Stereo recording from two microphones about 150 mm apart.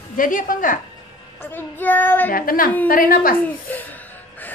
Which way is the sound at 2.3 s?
70° left (ahead or behind).